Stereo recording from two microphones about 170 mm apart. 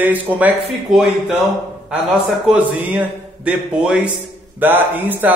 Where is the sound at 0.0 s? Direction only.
10° right (ahead or behind).